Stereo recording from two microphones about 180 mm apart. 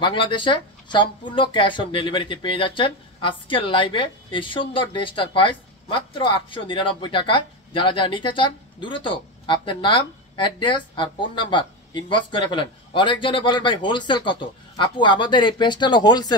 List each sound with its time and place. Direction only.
0.0 s speech: 25° left (ahead or behind)